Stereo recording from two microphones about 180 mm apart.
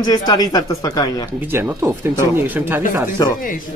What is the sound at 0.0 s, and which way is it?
Speech, 20° left (ahead or behind).